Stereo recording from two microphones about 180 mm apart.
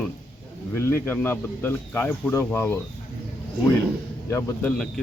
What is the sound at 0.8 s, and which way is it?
Speech, 15° left (ahead or behind).